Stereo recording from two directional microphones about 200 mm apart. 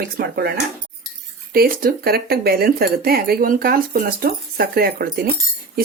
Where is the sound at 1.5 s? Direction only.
45° right (ahead or behind).